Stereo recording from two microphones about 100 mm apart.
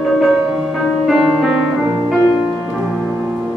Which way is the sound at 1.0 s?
Centre (ahead or behind).